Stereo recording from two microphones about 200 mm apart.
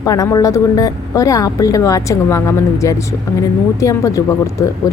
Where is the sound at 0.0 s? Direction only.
15° left (ahead or behind).